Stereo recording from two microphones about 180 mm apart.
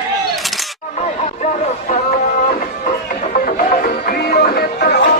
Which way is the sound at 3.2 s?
50° left (ahead or behind).